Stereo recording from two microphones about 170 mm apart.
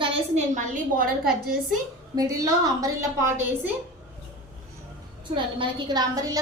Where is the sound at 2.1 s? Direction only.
20° right (ahead or behind).